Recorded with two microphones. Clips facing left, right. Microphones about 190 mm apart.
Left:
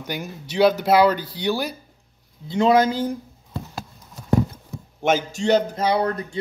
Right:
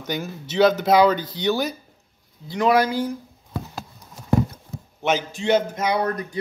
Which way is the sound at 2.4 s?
25° left (ahead or behind).